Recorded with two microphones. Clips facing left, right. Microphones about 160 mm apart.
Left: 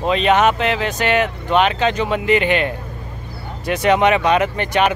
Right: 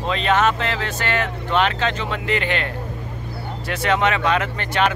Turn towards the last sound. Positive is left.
turn(degrees=15)  # may be behind; listen again after turning